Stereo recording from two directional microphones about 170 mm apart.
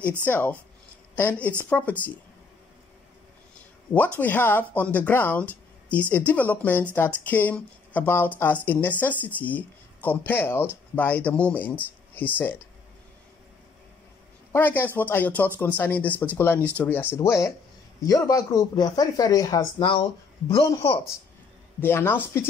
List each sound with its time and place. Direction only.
0.2 s a woman's voice: 10° left (ahead or behind)
4.2 s speech: 10° left (ahead or behind)
14.5 s a man's voice: 10° left (ahead or behind)
19.8 s speech: 30° left (ahead or behind)
20.5 s speech: 20° left (ahead or behind)